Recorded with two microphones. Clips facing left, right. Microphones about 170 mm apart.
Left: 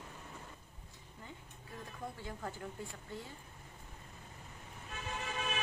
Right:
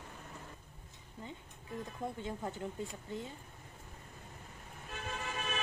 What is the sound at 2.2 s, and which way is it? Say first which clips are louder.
Speech: right 4 dB; 20° right (ahead or behind).